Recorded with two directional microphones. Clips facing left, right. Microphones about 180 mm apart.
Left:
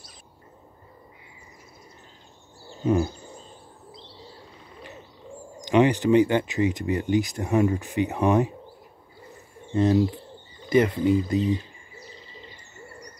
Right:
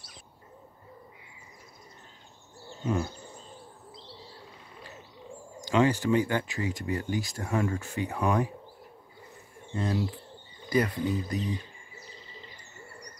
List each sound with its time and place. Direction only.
2.8 s a sound: 20° left (ahead or behind)
5.6 s speech: 20° left (ahead or behind)
9.8 s speech: 25° left (ahead or behind)